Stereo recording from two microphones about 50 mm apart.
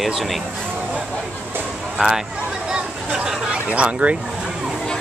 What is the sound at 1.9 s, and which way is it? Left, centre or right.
Speech, centre.